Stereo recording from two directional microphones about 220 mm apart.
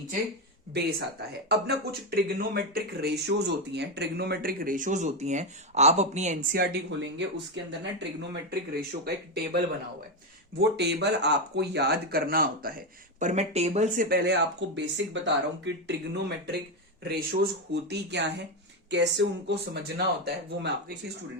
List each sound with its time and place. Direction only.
0.7 s speech: 45° right (ahead or behind)
7.2 s speech: 55° right (ahead or behind)
10.6 s speech: 50° right (ahead or behind)
13.1 s speech: 30° right (ahead or behind)
14.8 s speech: 55° right (ahead or behind)